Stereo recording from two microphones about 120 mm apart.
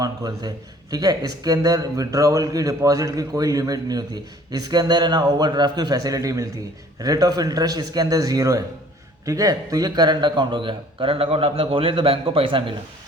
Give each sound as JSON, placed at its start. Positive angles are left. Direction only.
{"t": 0.0, "sound": "a man's voice", "side_deg": -30}